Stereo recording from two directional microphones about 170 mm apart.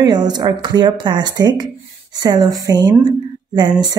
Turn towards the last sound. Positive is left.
turn(degrees=-25)  # may be behind; listen again after turning